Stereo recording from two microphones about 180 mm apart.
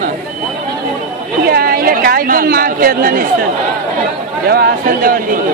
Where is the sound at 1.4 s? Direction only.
55° right (ahead or behind).